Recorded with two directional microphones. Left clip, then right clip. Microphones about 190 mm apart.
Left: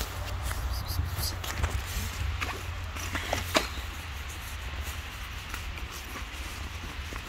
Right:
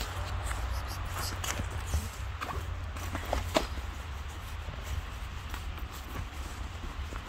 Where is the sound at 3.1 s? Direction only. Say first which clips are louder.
Left 3 dB; 5° right (ahead or behind).